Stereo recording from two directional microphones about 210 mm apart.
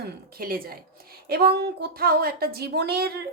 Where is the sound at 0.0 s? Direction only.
45° right (ahead or behind).